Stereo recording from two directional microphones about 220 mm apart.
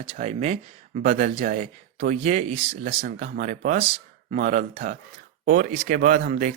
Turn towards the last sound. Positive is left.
turn(degrees=-35)  # may be behind; listen again after turning